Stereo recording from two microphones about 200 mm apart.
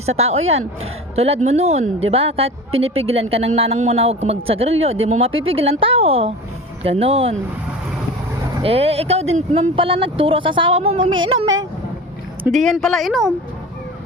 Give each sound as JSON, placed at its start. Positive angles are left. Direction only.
{"t": 0.0, "sound": "speech", "side_deg": -30}
{"t": 8.6, "sound": "speech", "side_deg": -30}
{"t": 12.4, "sound": "speech", "side_deg": 0}